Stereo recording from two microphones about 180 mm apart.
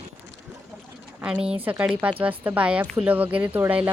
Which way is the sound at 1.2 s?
5° right (ahead or behind).